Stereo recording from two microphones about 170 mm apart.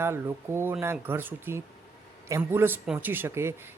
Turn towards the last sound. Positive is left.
turn(degrees=-15)  # may be behind; listen again after turning